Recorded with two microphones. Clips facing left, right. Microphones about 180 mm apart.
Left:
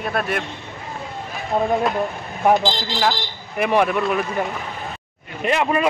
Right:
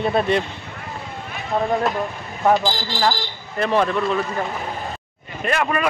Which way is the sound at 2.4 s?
20° left (ahead or behind).